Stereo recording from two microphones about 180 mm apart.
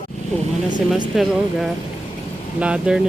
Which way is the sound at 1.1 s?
Centre (ahead or behind).